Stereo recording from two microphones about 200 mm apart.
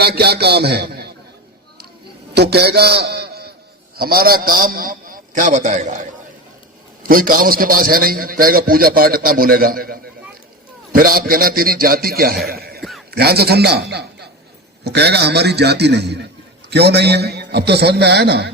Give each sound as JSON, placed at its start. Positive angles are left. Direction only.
{"t": 0.0, "sound": "a man's voice", "side_deg": -55}
{"t": 2.3, "sound": "a man's voice", "side_deg": -55}
{"t": 12.8, "sound": "a sound", "side_deg": 0}
{"t": 13.1, "sound": "a man's voice", "side_deg": -50}